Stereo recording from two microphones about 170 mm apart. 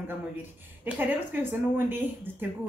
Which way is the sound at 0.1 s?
10° right (ahead or behind).